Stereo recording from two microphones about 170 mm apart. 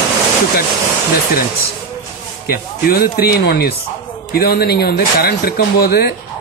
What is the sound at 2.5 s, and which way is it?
Speech, 65° left (ahead or behind).